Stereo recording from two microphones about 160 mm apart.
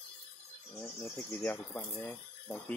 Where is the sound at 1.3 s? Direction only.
15° left (ahead or behind).